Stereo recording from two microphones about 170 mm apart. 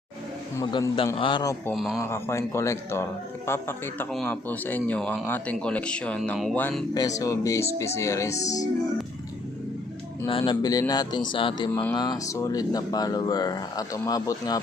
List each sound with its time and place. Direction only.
0.5 s speech: 25° left (ahead or behind)
1.7 s speech: centre (ahead or behind)
2.0 s a man's voice: 15° left (ahead or behind); by 6.6 s centre (ahead or behind)
6.6 s a man's voice: 10° left (ahead or behind)
6.9 s speech: 20° left (ahead or behind)
10.2 s speech: 30° left (ahead or behind)
11.7 s a man's voice: 10° left (ahead or behind)
11.9 s speech: 20° left (ahead or behind)